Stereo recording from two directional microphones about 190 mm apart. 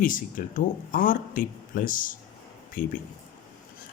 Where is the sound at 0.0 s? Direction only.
45° left (ahead or behind).